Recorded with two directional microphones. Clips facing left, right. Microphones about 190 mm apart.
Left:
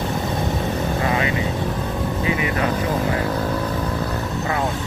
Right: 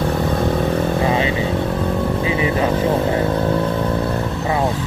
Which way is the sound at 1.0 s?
25° right (ahead or behind).